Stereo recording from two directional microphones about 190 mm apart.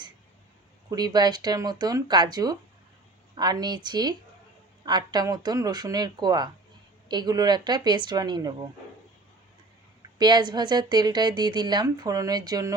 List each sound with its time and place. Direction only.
0.9 s a woman's voice: 20° right (ahead or behind)
10.2 s a woman's voice: 20° right (ahead or behind)